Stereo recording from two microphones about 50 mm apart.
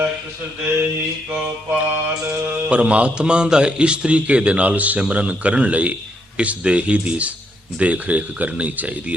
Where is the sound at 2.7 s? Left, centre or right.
Right.